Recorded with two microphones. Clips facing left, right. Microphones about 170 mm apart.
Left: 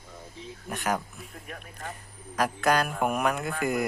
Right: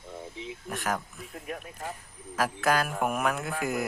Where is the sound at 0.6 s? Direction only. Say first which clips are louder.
Left 3 dB; centre (ahead or behind).